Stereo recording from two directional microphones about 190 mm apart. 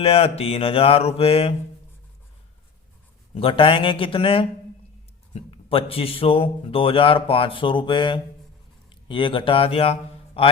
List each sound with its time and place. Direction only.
0.0 s mantra: 30° left (ahead or behind)
3.3 s a man's voice: 30° left (ahead or behind)